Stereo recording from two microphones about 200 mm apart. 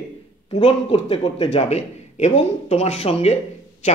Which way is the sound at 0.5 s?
25° left (ahead or behind).